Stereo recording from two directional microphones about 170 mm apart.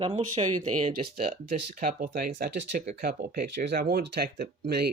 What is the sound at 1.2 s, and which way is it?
Speech, 55° right (ahead or behind).